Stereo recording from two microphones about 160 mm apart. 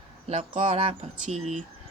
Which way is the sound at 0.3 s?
45° right (ahead or behind).